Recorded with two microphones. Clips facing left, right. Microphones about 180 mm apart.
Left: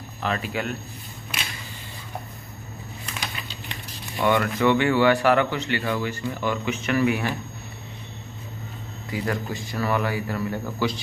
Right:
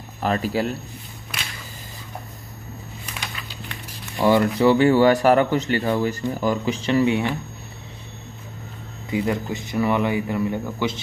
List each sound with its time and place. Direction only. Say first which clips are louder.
0.2 s speech: right 5 dB; 40° right (ahead or behind)
4.2 s speech: right 4 dB; 30° right (ahead or behind)
9.2 s speech: right 1 dB; 20° right (ahead or behind)